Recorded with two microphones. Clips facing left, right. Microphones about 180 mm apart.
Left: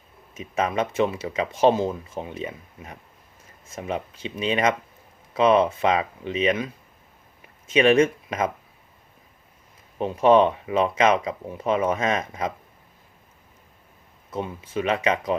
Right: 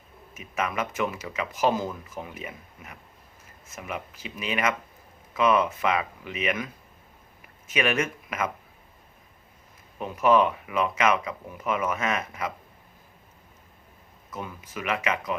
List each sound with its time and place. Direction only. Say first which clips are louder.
0.3 s speech: left 5 dB; 30° left (ahead or behind)
10.0 s speech: left 4 dB; 30° left (ahead or behind)
14.3 s speech: left 7 dB; 30° left (ahead or behind)